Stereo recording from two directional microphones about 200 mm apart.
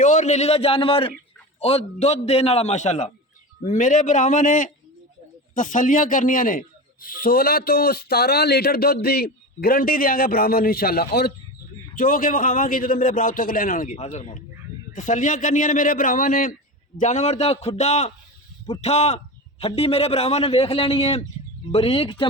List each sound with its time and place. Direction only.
0.0 s a man's voice: 40° left (ahead or behind)